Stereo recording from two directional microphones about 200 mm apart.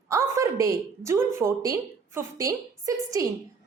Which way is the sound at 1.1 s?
15° right (ahead or behind).